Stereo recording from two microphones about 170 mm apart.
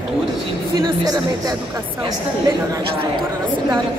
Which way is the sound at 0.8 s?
25° right (ahead or behind).